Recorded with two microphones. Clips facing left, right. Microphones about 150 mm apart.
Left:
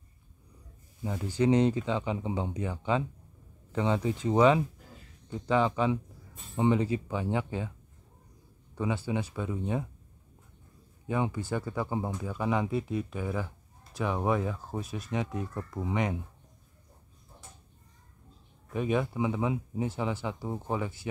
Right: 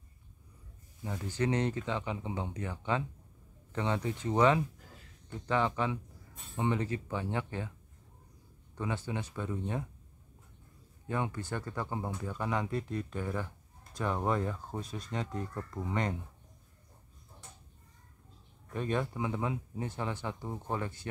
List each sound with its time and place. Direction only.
1.0 s speech: 15° left (ahead or behind)
8.7 s speech: 10° left (ahead or behind)
11.3 s speech: 10° left (ahead or behind)
18.7 s speech: 10° left (ahead or behind)